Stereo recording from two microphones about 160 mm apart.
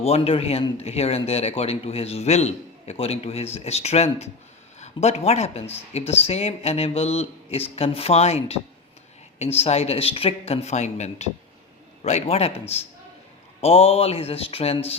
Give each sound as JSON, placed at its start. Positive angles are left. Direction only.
{"t": 0.0, "sound": "speech", "side_deg": 40}